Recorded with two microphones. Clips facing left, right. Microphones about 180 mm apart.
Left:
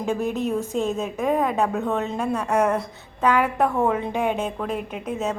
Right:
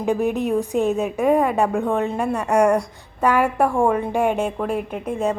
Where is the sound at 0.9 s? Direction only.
65° right (ahead or behind).